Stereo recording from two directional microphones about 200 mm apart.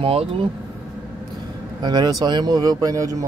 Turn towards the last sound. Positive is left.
turn(degrees=-15)  # may be behind; listen again after turning